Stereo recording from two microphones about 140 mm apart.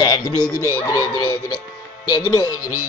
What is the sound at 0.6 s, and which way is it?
Speech, 20° left (ahead or behind).